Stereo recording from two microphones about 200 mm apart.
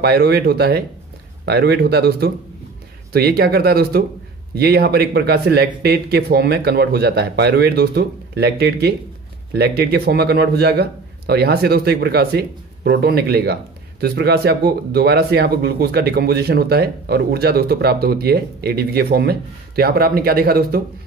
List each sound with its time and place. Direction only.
0.0 s speech: 55° right (ahead or behind)